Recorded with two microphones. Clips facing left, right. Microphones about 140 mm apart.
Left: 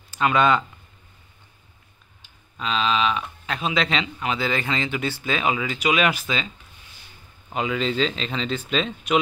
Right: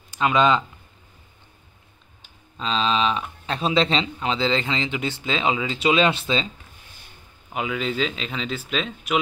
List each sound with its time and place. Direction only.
0.1 s speech: 20° right (ahead or behind)
2.5 s speech: 30° right (ahead or behind)
7.5 s speech: 5° right (ahead or behind)